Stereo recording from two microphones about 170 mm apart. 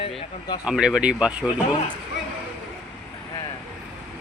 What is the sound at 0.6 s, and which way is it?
Speech, 5° right (ahead or behind).